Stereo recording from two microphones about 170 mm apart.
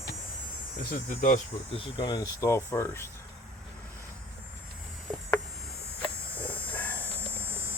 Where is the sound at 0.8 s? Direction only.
55° left (ahead or behind).